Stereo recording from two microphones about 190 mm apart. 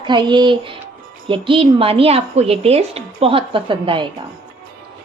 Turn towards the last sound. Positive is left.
turn(degrees=-25)  # may be behind; listen again after turning